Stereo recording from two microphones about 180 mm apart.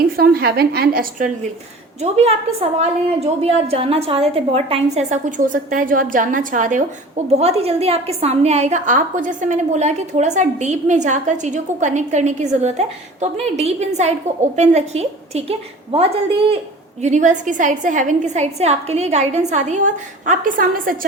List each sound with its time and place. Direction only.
0.2 s a woman's voice: 60° right (ahead or behind)
2.0 s a woman's voice: 35° right (ahead or behind); by 21.1 s 50° right (ahead or behind)